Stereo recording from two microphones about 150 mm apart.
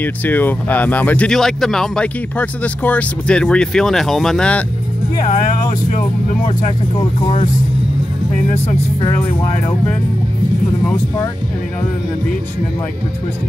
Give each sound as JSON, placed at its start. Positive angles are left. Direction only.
{"t": 0.0, "sound": "speech", "side_deg": 10}
{"t": 7.2, "sound": "speech", "side_deg": 35}